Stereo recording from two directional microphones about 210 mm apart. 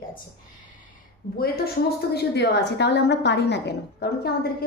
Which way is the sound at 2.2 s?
50° left (ahead or behind).